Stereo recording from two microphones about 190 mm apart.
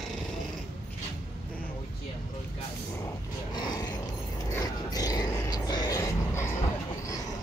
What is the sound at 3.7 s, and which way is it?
Mechanisms, 20° left (ahead or behind).